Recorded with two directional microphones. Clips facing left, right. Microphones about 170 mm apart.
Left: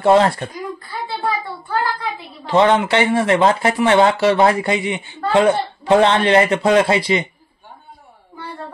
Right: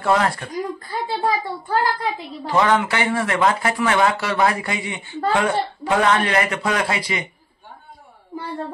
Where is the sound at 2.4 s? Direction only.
25° left (ahead or behind).